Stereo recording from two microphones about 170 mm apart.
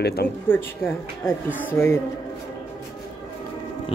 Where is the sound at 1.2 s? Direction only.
10° left (ahead or behind).